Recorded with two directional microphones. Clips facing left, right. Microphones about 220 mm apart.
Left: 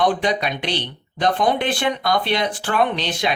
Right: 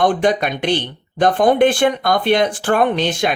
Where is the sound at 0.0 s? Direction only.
50° right (ahead or behind).